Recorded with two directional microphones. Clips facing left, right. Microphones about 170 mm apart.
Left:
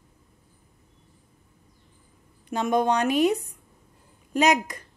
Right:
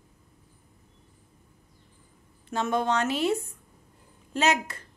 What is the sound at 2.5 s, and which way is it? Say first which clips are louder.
A woman's voice: left 3 dB; 15° left (ahead or behind).